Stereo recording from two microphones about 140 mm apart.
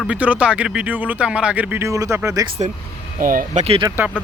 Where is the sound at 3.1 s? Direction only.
80° right.